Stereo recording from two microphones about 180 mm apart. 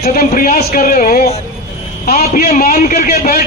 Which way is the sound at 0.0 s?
50° left (ahead or behind).